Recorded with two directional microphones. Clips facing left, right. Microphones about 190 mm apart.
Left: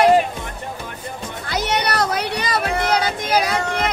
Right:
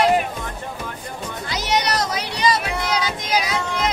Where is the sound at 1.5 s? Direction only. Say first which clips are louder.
Left 1 dB; 55° left (ahead or behind).